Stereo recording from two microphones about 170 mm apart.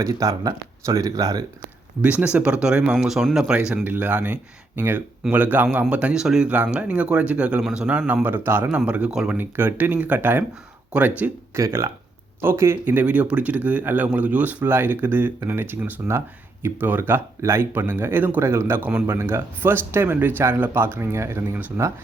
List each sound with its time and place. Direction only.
0.0 s speech: 20° right (ahead or behind)
2.0 s speech: 10° right (ahead or behind)